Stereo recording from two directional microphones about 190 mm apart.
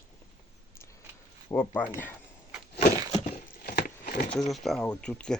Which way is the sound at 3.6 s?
50° left (ahead or behind).